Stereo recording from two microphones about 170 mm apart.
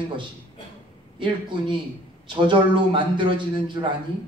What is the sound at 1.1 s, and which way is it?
A man's voice, 30° right (ahead or behind).